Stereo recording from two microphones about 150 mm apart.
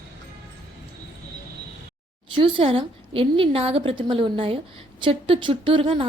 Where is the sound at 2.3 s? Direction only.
35° right (ahead or behind).